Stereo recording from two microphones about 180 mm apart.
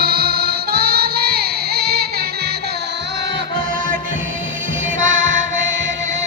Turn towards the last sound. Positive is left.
turn(degrees=-40)  # may be behind; listen again after turning